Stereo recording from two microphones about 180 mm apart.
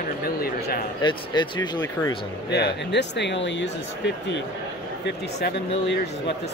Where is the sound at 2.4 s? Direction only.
65° left (ahead or behind); by 4.4 s 85° left.